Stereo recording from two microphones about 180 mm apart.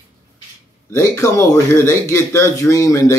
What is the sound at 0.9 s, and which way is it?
Speech, 15° left (ahead or behind).